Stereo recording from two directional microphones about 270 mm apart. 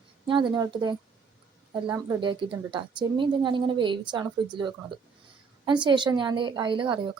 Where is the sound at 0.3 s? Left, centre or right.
Centre.